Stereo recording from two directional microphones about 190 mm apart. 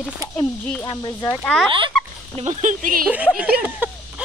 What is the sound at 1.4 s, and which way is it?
Speech, 5° left (ahead or behind).